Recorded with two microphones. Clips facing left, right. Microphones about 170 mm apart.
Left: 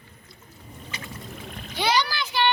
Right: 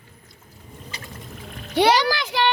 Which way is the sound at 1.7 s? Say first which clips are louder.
Right 7 dB; 70° right (ahead or behind).